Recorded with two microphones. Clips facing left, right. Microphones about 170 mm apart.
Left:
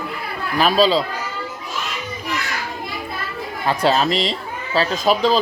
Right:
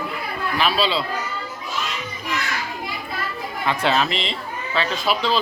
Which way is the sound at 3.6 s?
35° left (ahead or behind).